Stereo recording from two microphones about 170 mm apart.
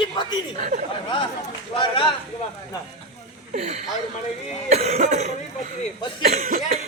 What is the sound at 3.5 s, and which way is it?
Cough, 40° right (ahead or behind).